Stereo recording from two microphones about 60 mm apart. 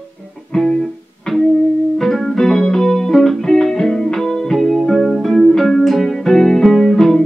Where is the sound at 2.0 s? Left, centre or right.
Centre.